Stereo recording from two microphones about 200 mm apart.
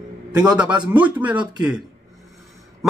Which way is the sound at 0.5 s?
5° right (ahead or behind).